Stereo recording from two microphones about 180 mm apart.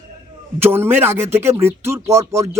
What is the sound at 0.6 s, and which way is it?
A man's voice, 10° right (ahead or behind).